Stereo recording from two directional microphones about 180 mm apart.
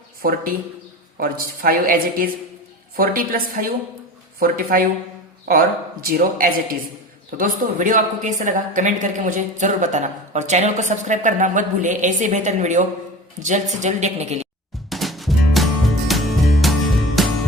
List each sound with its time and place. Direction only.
0.2 s speech: 55° right (ahead or behind)
6.1 s speech: 50° right (ahead or behind)
14.8 s music: centre (ahead or behind)